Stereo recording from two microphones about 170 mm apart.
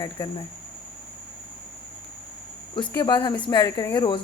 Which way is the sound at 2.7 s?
30° left (ahead or behind).